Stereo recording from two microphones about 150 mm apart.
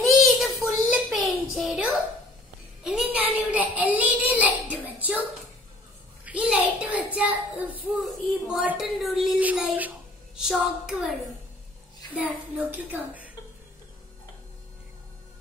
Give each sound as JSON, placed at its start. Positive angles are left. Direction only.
{"t": 0.0, "sound": "a sound", "side_deg": 0}
{"t": 2.8, "sound": "child singing", "side_deg": -5}
{"t": 6.2, "sound": "a child's voice", "side_deg": -10}
{"t": 12.2, "sound": "a woman's voice", "side_deg": -10}